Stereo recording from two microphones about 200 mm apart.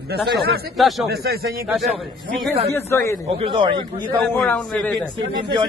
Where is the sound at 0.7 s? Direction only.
Centre (ahead or behind).